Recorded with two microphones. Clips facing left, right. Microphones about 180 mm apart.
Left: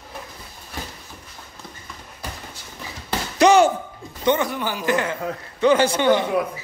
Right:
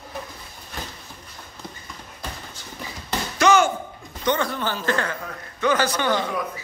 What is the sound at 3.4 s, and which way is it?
Slam, 35° left (ahead or behind).